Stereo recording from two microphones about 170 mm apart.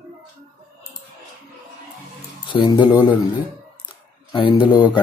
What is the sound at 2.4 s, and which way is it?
Speech, 25° left (ahead or behind).